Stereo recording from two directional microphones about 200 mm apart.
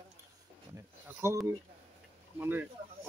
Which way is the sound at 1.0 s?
15° right (ahead or behind).